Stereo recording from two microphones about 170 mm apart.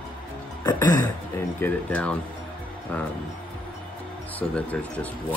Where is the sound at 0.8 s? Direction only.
20° left (ahead or behind).